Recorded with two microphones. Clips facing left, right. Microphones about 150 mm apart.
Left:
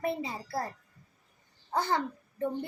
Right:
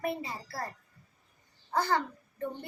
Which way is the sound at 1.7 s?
20° left (ahead or behind).